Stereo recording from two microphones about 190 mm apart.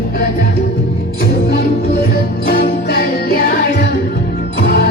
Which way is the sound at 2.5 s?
55° left (ahead or behind).